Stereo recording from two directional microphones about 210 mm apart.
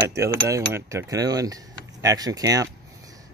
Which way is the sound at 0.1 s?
15° right (ahead or behind).